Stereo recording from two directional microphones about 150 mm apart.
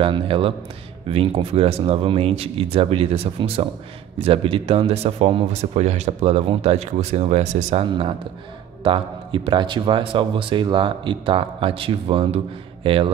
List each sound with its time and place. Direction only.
0.0 s a man's voice: 35° right (ahead or behind)